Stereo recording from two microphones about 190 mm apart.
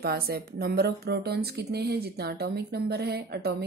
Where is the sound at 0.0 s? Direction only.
50° right (ahead or behind).